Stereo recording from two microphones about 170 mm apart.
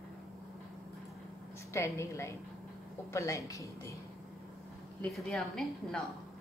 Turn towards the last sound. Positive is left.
turn(degrees=5)  # may be behind; listen again after turning